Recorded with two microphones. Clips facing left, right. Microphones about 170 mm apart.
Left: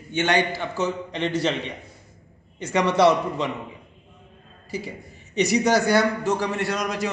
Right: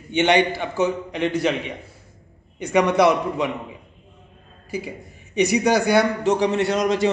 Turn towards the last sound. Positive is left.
turn(degrees=-25)  # may be behind; listen again after turning